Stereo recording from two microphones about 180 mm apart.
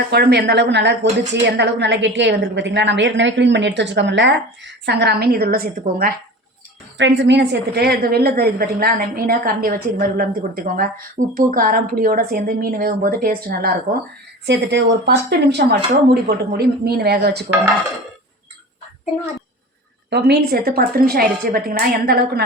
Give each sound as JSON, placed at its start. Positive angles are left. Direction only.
{"t": 0.1, "sound": "a woman's voice", "side_deg": -65}
{"t": 6.9, "sound": "a woman's voice", "side_deg": -90}
{"t": 14.4, "sound": "a woman's voice", "side_deg": -75}
{"t": 15.3, "sound": "a woman's voice", "side_deg": -70}
{"t": 20.1, "sound": "a woman's voice", "side_deg": -65}